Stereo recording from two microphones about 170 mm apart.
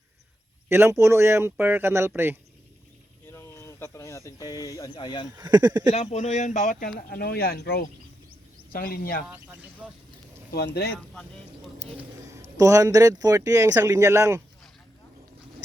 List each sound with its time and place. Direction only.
0.7 s speech: 15° right (ahead or behind)
3.2 s a sound: 15° left (ahead or behind)
4.8 s speech: 25° left (ahead or behind)
5.4 s speech: 25° right (ahead or behind)
5.9 s speech: 40° left (ahead or behind); by 9.2 s 60° left (ahead or behind)
10.9 s speech: 5° left (ahead or behind)
12.2 s speech: 20° right (ahead or behind)